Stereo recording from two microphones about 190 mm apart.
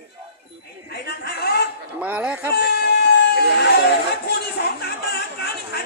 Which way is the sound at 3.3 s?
60° left (ahead or behind).